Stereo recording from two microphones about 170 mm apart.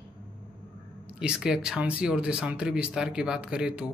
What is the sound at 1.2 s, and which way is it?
A man's voice, 5° right (ahead or behind).